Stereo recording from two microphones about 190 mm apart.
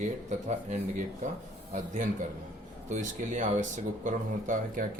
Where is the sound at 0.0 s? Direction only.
40° right (ahead or behind).